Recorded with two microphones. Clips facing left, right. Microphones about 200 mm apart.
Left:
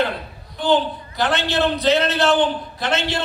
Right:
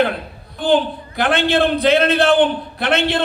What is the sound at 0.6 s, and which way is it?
A man's voice, 55° right (ahead or behind).